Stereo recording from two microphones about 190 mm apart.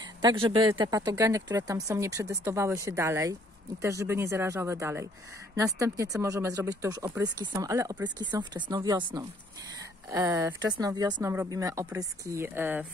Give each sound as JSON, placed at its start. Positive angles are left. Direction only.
{"t": 0.2, "sound": "speech", "side_deg": -25}